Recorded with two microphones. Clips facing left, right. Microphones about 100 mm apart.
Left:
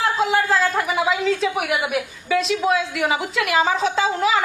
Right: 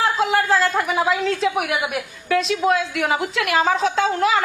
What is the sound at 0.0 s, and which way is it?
Speech, centre (ahead or behind).